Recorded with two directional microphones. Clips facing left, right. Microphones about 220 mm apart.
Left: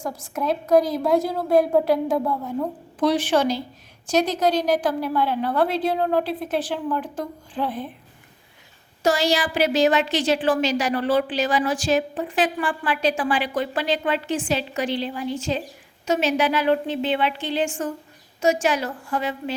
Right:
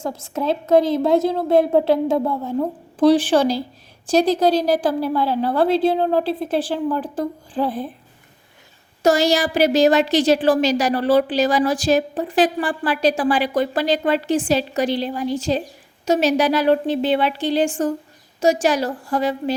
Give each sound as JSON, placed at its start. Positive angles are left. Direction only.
{"t": 0.0, "sound": "a woman's voice", "side_deg": -25}
{"t": 9.0, "sound": "speech", "side_deg": -45}